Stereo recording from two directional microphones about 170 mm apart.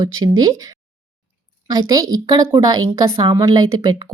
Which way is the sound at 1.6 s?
20° right (ahead or behind).